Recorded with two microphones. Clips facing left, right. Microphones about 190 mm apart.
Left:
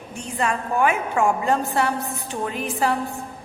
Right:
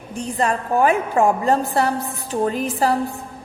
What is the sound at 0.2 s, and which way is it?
A woman's voice, 35° right (ahead or behind).